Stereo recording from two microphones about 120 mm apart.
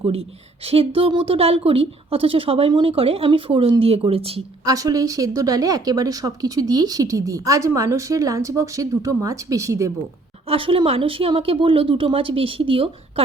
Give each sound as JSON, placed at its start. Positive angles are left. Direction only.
{"t": 0.1, "sound": "a woman's voice", "side_deg": -55}
{"t": 4.6, "sound": "speech", "side_deg": -30}
{"t": 10.5, "sound": "a woman's voice", "side_deg": -50}